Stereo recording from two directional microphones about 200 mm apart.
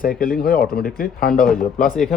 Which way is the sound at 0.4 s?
50° left (ahead or behind).